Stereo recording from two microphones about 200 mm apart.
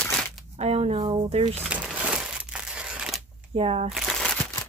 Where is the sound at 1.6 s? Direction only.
5° right (ahead or behind).